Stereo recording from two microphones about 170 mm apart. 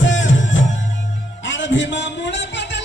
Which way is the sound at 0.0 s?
90° left.